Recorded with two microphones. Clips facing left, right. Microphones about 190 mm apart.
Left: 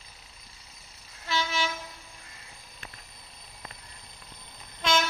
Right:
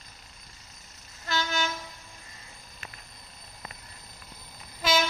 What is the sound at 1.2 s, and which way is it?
Train, centre (ahead or behind).